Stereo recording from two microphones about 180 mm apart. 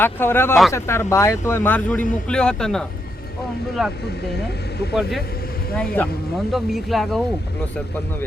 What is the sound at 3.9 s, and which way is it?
Speech, 65° left (ahead or behind).